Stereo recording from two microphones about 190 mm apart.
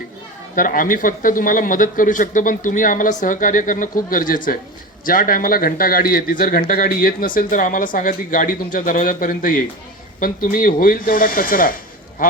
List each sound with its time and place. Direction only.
0.5 s speech: 45° left (ahead or behind)